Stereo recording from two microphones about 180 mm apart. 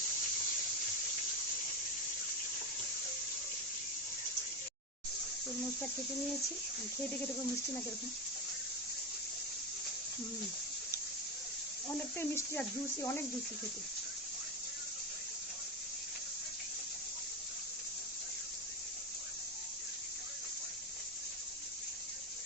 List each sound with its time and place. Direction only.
11.9 s speech: 10° left (ahead or behind)